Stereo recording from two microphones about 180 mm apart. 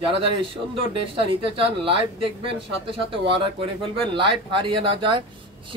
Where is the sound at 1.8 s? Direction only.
30° right (ahead or behind).